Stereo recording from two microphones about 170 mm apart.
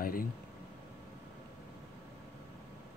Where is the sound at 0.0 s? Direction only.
60° left (ahead or behind).